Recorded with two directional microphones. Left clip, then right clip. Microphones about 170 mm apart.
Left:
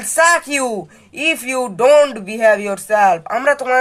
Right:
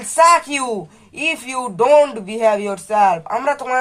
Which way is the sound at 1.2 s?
45° left (ahead or behind).